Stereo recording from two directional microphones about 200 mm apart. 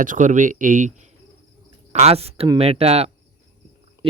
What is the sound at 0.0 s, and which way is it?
Speech, 40° right (ahead or behind).